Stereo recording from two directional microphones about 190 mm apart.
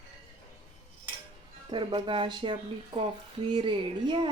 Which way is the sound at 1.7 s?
25° right (ahead or behind).